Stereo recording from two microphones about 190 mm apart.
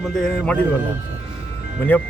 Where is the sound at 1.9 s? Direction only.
10° left (ahead or behind).